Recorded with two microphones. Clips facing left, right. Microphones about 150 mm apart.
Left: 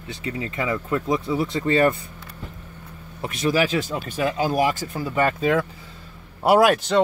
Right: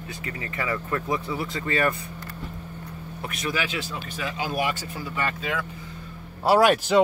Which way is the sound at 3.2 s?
30° left (ahead or behind).